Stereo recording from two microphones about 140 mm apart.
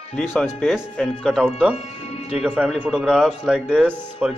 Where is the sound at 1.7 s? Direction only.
45° left (ahead or behind).